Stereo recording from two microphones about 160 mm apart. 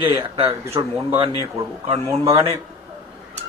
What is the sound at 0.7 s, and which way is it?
Speech, 15° right (ahead or behind).